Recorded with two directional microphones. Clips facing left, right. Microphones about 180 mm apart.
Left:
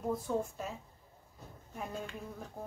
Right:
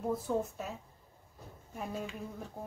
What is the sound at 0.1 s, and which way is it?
Speech, centre (ahead or behind).